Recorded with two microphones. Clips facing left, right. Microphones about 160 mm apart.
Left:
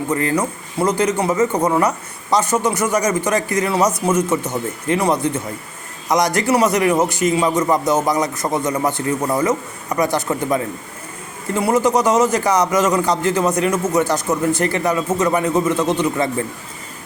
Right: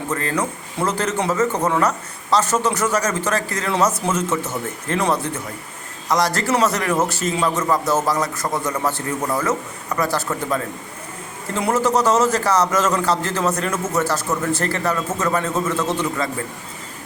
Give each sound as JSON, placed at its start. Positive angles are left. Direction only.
{"t": 0.1, "sound": "speech", "side_deg": 15}